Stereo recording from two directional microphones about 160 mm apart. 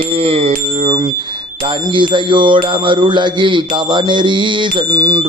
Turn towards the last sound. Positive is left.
turn(degrees=-30)  # may be behind; listen again after turning